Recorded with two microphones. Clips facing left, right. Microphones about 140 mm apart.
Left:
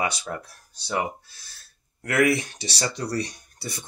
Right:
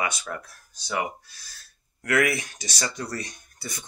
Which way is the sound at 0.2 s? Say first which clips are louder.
Left 2 dB; 30° left (ahead or behind).